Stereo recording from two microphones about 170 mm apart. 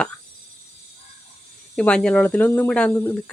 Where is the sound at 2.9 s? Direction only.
15° left (ahead or behind).